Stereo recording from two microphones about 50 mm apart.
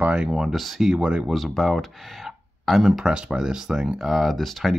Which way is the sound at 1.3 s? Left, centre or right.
Centre.